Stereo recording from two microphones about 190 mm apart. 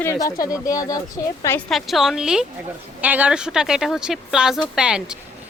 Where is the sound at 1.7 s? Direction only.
Centre (ahead or behind).